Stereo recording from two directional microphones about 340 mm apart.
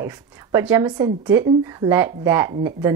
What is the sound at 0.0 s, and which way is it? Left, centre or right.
Speech, centre.